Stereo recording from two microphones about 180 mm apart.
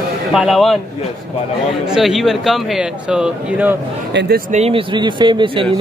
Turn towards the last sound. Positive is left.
turn(degrees=-25)  # may be behind; listen again after turning